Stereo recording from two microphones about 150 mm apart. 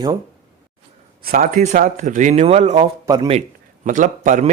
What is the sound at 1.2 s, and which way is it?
A man's voice, 75° right (ahead or behind).